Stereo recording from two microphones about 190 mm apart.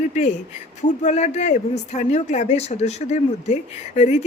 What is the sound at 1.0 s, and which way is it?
Speech, 40° left (ahead or behind).